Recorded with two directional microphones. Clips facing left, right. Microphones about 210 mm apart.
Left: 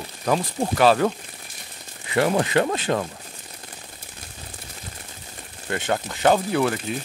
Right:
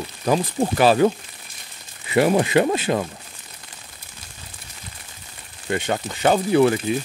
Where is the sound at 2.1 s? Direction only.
10° right (ahead or behind).